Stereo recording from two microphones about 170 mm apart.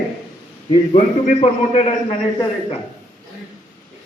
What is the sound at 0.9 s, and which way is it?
Speech, 40° left (ahead or behind).